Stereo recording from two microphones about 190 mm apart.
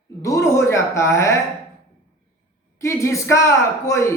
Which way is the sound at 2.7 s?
15° left (ahead or behind).